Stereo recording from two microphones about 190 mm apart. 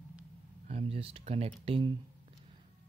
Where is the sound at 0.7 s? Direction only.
30° right (ahead or behind).